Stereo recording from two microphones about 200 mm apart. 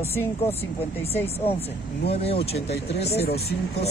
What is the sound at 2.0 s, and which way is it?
Speech, 30° left (ahead or behind).